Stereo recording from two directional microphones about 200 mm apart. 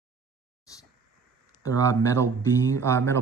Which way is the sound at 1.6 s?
15° left (ahead or behind).